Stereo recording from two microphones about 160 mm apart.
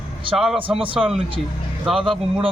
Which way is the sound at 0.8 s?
35° right (ahead or behind).